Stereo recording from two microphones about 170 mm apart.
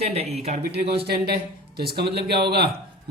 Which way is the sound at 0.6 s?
70° right (ahead or behind).